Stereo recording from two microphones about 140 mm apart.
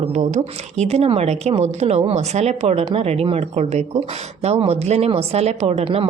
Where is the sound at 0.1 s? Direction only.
55° right (ahead or behind).